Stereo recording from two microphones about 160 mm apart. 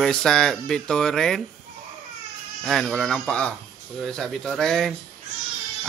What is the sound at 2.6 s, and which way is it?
A man's voice, centre (ahead or behind).